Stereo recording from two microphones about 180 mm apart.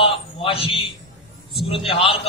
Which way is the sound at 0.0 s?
30° left (ahead or behind).